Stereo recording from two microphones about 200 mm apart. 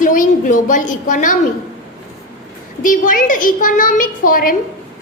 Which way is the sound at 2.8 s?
40° left (ahead or behind).